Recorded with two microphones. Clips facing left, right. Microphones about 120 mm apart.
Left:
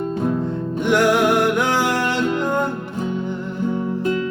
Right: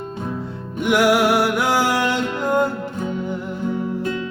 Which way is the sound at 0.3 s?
10° right (ahead or behind).